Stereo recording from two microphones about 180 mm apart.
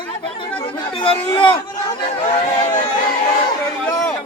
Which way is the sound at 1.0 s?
30° left (ahead or behind).